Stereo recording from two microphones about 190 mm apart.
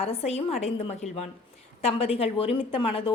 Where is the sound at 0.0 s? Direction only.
35° left (ahead or behind).